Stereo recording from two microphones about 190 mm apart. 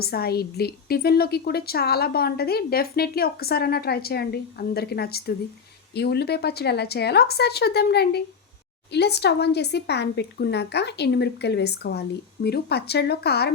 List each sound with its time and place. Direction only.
0.0 s a woman's voice: 55° left (ahead or behind)